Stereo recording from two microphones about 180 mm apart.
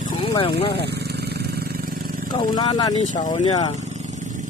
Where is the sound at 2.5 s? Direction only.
25° left (ahead or behind).